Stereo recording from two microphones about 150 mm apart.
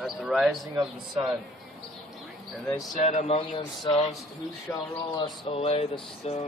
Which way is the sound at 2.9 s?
50° left (ahead or behind).